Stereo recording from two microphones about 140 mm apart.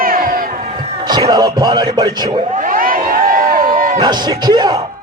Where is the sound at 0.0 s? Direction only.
90° right.